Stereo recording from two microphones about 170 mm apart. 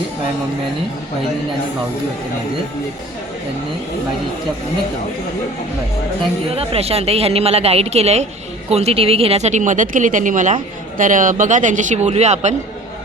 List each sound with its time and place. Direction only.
6.5 s speech: 35° right (ahead or behind)